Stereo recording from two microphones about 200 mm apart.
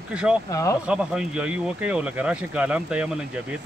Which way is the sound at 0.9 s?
5° right (ahead or behind).